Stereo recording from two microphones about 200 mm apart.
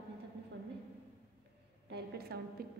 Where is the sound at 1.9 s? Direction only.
50° right (ahead or behind).